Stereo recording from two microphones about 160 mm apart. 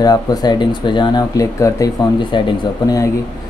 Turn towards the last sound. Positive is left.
turn(degrees=20)  # may be behind; listen again after turning